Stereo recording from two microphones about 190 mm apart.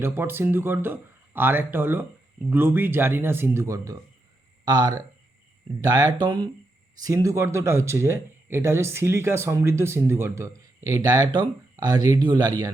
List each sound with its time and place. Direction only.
0.0 s speech: 10° right (ahead or behind)